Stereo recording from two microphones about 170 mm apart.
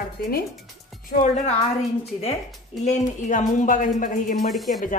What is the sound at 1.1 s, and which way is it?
Speech, 50° left (ahead or behind).